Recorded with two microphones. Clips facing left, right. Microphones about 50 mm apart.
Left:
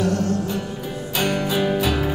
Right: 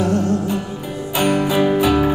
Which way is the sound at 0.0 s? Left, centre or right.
Right.